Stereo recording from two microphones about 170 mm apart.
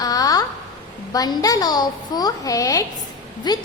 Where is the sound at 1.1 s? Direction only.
20° left (ahead or behind).